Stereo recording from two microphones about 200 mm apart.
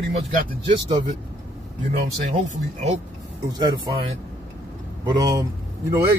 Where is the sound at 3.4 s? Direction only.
20° right (ahead or behind).